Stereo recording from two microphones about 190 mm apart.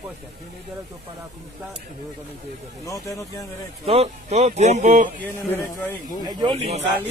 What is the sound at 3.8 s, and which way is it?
Speech, 30° right (ahead or behind).